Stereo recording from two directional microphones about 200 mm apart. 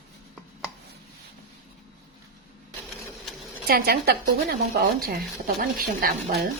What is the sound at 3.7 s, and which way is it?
Speech, 50° right (ahead or behind).